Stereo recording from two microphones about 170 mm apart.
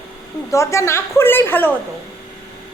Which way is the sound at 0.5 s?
20° left (ahead or behind).